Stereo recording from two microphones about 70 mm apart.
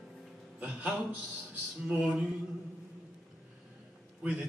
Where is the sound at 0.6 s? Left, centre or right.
Right.